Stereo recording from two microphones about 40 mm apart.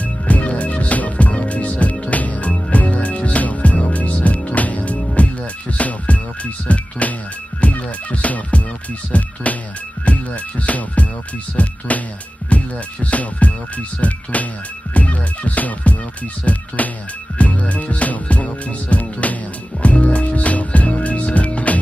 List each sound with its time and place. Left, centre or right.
0.0 s music: left
11.6 s speech: left
12.4 s music: left